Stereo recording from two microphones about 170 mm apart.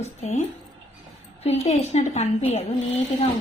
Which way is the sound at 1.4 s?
35° left (ahead or behind).